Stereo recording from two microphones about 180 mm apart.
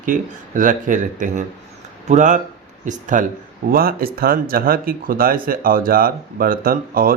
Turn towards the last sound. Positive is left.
turn(degrees=-55)  # may be behind; listen again after turning